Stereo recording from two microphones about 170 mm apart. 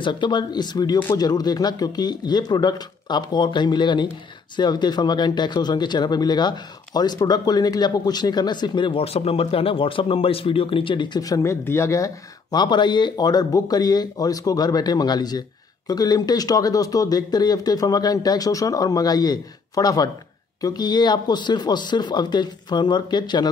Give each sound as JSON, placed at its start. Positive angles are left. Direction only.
{"t": 0.0, "sound": "speech", "side_deg": 30}